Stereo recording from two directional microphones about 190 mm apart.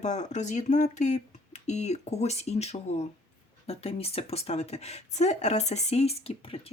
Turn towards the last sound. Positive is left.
turn(degrees=30)  # may be behind; listen again after turning